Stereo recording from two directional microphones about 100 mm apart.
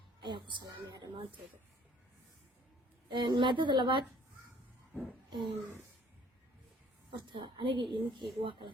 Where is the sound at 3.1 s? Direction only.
55° right (ahead or behind).